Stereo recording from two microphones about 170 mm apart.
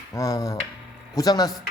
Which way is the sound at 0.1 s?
20° left (ahead or behind).